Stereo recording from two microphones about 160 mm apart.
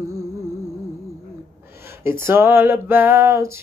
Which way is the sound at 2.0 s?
15° right (ahead or behind).